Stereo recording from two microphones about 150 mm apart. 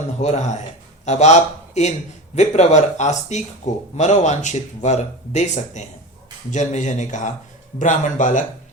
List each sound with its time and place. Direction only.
0.2 s speech: 50° left (ahead or behind)